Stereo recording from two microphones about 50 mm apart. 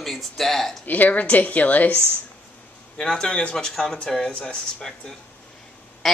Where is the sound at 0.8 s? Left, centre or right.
Left.